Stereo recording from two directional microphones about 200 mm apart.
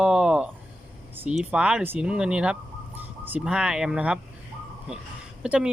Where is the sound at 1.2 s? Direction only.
5° right (ahead or behind).